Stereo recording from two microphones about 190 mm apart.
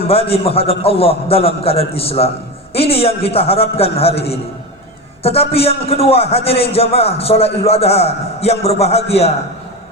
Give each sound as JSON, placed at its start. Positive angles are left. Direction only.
{"t": 0.1, "sound": "a man's voice", "side_deg": 30}